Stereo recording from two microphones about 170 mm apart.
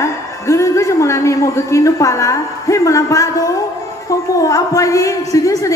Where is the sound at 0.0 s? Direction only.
15° left (ahead or behind).